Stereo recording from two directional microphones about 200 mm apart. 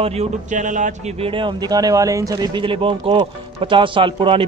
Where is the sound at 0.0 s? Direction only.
30° right (ahead or behind).